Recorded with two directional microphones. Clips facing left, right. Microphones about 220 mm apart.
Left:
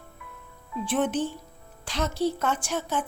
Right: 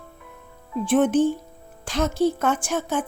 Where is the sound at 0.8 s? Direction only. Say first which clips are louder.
Right 8 dB; 50° right (ahead or behind).